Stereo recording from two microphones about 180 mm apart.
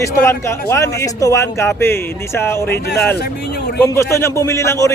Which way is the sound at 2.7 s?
65° left (ahead or behind).